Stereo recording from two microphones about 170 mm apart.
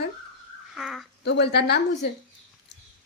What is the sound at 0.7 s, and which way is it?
Speech, centre (ahead or behind).